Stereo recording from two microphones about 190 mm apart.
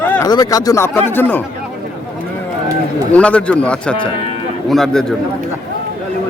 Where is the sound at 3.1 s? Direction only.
5° left (ahead or behind).